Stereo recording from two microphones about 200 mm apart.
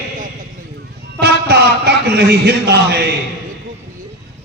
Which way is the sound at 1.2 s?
55° right (ahead or behind).